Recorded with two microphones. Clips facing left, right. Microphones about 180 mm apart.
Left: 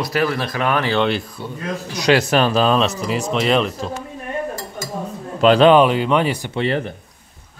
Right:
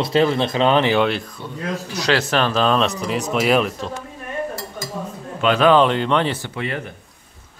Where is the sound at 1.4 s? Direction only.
10° left (ahead or behind).